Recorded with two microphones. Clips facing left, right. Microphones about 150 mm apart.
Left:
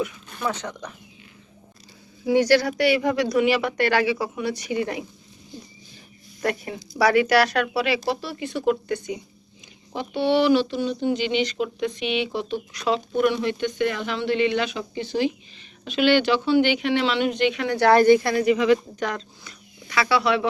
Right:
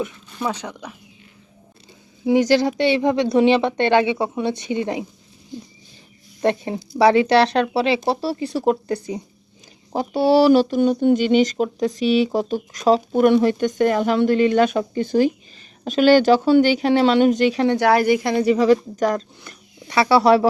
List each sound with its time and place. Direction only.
0.4 s a woman's voice: 10° right (ahead or behind)
2.2 s speech: 20° right (ahead or behind)
6.4 s speech: 25° right (ahead or behind)
17.7 s a woman's voice: 10° right (ahead or behind)
18.4 s speech: 35° right (ahead or behind)
19.5 s a sound: 55° right (ahead or behind)
19.9 s speech: 30° right (ahead or behind)